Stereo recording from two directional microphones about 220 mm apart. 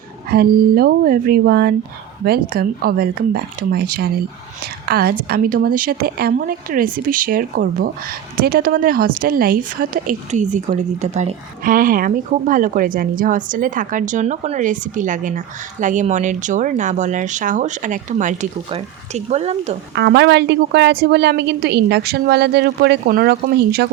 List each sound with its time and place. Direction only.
0.3 s a woman's voice: 45° right (ahead or behind)
20.0 s a woman's voice: 50° right (ahead or behind)